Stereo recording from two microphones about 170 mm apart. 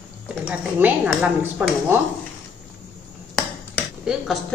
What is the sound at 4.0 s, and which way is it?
Speech, centre (ahead or behind).